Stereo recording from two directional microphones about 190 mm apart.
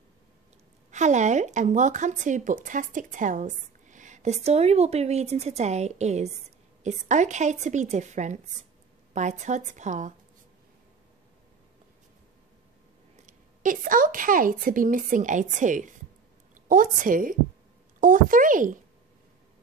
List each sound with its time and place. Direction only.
0.9 s speech: 40° right (ahead or behind)
13.1 s a woman's voice: 45° right (ahead or behind)